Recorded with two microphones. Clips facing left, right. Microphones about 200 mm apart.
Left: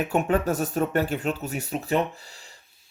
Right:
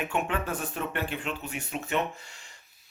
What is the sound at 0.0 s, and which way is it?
Speech, 40° left (ahead or behind).